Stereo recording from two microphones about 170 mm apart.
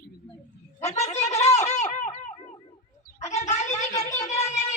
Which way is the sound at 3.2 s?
40° left (ahead or behind).